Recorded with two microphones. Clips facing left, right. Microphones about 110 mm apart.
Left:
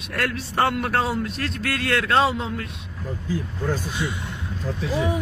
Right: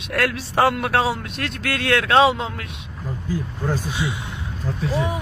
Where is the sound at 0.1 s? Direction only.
85° right.